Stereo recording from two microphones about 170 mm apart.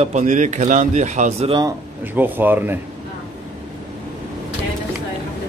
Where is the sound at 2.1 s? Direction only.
10° right (ahead or behind).